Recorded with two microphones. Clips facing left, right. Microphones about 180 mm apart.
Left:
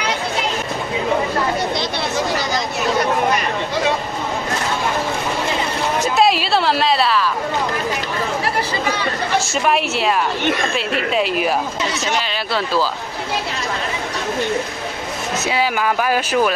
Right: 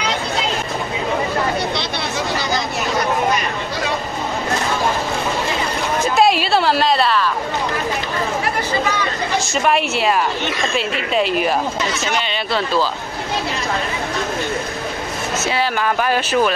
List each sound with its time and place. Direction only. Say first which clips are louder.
6.1 s a sound: right 2 dB; centre (ahead or behind)
9.5 s a woman's voice: right 1 dB; centre (ahead or behind)
11.1 s a woman's voice: right 2 dB; 5° left (ahead or behind)
15.4 s speech: left 1 dB; 10° left (ahead or behind)